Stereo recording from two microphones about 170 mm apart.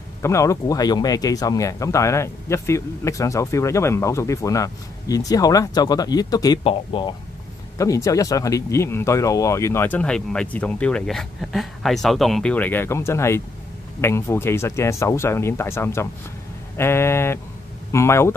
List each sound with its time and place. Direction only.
0.2 s speech: 15° left (ahead or behind)
7.7 s speech: 20° left (ahead or behind)